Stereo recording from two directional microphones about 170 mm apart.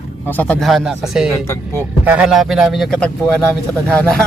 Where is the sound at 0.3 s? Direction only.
10° left (ahead or behind).